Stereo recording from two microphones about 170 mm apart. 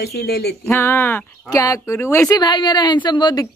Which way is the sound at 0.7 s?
10° left (ahead or behind).